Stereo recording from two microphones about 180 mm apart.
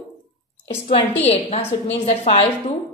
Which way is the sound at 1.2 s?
35° left (ahead or behind).